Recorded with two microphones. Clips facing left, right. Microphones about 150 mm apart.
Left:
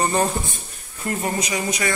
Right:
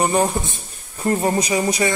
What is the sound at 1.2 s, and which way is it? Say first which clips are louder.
Speech: right 3 dB; 30° right (ahead or behind).